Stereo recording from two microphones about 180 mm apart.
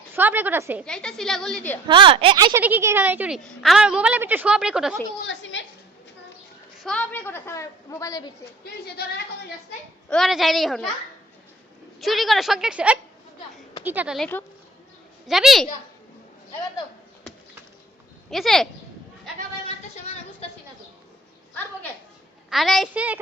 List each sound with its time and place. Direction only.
0.1 s a woman's voice: 10° right (ahead or behind)
0.9 s a woman's voice: 5° left (ahead or behind)
1.9 s a woman's voice: 30° right (ahead or behind)
2.6 s a woman's voice: 10° right (ahead or behind)
5.2 s a woman's voice: 90° left
6.7 s a woman's voice: 5° left (ahead or behind)
8.6 s speech: 60° left (ahead or behind)
10.1 s a woman's voice: centre (ahead or behind)
11.9 s a woman's voice: centre (ahead or behind)
14.2 s a woman's voice: 10° left (ahead or behind)
15.3 s a woman's voice: centre (ahead or behind)
18.3 s a woman's voice: centre (ahead or behind)
19.6 s a sound: 35° left (ahead or behind)
22.4 s a woman's voice: centre (ahead or behind)